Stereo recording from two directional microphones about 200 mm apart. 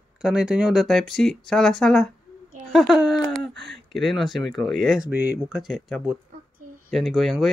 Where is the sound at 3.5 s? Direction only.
60° right (ahead or behind).